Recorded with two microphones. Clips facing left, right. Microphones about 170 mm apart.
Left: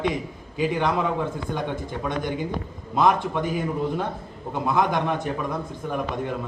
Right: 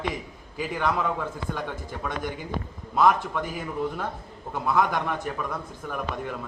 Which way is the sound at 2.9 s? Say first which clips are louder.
Left 1 dB; 20° left (ahead or behind).